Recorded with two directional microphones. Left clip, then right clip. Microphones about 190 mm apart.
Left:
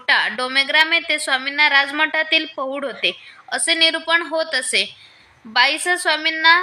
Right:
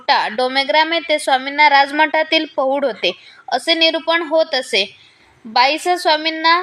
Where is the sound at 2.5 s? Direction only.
15° left (ahead or behind).